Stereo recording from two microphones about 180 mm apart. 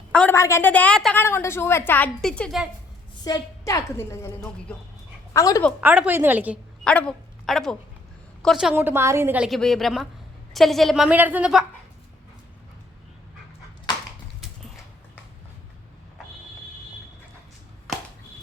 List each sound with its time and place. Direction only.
0.1 s a woman's voice: 5° left (ahead or behind)
3.2 s a woman's voice: 20° left (ahead or behind)
5.8 s a woman's voice: 10° right (ahead or behind)
6.8 s a woman's voice: 5° left (ahead or behind)